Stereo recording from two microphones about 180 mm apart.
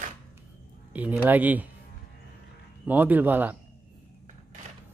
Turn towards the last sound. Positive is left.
turn(degrees=-10)  # may be behind; listen again after turning